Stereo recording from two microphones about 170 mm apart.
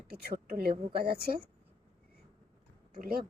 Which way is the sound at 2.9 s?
60° right (ahead or behind).